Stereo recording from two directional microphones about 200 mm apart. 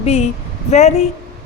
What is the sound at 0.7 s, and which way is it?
Speech, 35° left (ahead or behind).